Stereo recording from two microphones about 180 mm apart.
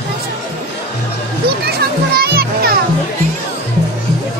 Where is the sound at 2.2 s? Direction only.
60° right (ahead or behind).